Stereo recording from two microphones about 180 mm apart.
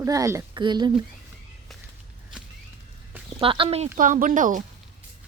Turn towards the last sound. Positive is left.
turn(degrees=-45)  # may be behind; listen again after turning